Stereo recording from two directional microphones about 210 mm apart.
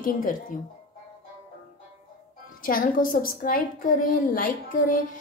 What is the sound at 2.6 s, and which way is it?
A woman's voice, 40° left (ahead or behind).